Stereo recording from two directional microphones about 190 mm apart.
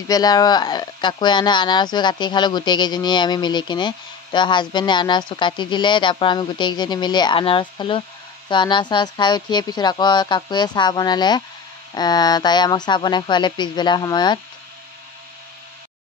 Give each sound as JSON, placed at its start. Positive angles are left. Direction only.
{"t": 0.1, "sound": "speech", "side_deg": 20}